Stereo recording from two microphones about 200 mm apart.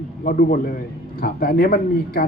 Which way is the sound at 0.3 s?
45° left (ahead or behind).